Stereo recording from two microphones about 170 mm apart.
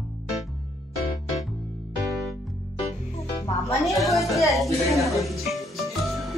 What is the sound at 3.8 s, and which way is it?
Music, centre (ahead or behind).